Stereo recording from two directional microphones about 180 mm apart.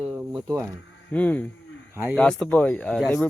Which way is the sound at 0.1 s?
5° right (ahead or behind).